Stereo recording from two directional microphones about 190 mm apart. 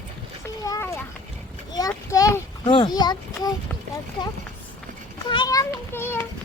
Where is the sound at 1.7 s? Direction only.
20° left (ahead or behind).